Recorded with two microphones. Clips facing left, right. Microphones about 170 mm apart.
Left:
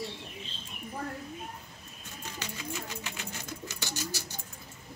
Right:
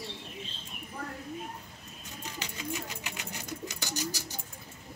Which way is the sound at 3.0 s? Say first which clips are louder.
Even; 15° right (ahead or behind).